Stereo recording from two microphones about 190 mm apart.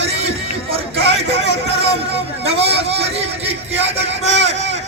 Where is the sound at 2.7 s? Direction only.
30° right (ahead or behind).